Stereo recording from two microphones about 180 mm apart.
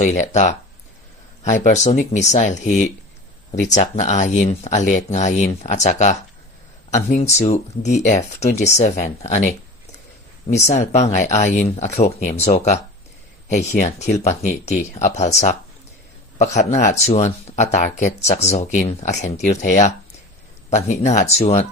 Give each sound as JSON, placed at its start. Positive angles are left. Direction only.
{"t": 0.0, "sound": "speech", "side_deg": 40}
{"t": 10.5, "sound": "speech", "side_deg": 40}